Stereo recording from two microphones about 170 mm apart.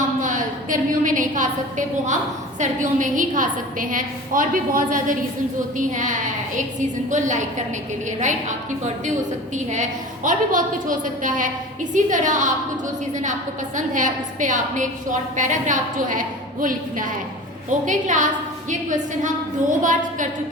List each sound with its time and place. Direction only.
0.2 s a woman's voice: 50° right (ahead or behind)
10.2 s a woman's voice: 50° right (ahead or behind)
13.7 s a woman's voice: 50° right (ahead or behind)